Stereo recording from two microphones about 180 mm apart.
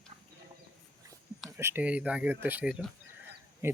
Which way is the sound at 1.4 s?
15° right (ahead or behind).